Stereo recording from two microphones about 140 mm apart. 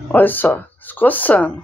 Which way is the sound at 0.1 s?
15° left (ahead or behind).